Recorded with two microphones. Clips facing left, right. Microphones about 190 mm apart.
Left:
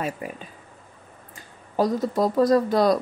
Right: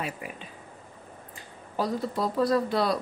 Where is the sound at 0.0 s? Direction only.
45° left (ahead or behind).